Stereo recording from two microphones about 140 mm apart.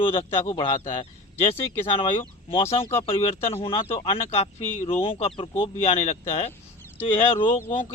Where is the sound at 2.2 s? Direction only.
40° left (ahead or behind).